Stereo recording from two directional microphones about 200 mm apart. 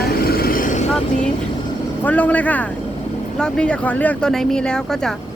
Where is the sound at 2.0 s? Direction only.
10° left (ahead or behind).